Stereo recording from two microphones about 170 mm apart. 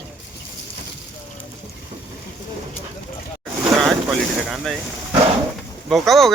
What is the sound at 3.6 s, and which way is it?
Boat, 20° right (ahead or behind).